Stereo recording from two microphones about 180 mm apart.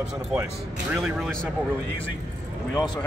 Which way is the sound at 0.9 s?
Centre (ahead or behind).